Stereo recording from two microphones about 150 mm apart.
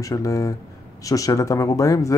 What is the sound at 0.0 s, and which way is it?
Speech, 25° left (ahead or behind).